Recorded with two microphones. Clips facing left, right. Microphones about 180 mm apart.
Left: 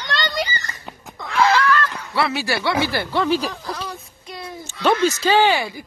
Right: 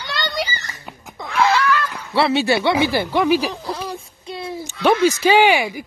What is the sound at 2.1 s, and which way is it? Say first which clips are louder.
Speech: right 6 dB; 25° right (ahead or behind).